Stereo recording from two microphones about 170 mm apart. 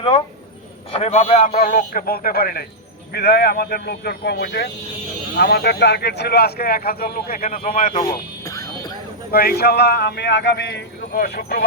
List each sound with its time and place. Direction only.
0.9 s a man's voice: 40° left (ahead or behind)
7.9 s music: 20° left (ahead or behind)
9.3 s speech: 65° left (ahead or behind); by 10.8 s 80° left
11.1 s a man's voice: 60° left (ahead or behind)